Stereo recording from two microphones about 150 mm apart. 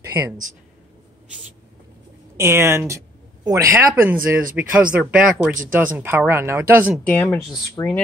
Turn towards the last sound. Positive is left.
turn(degrees=20)  # may be behind; listen again after turning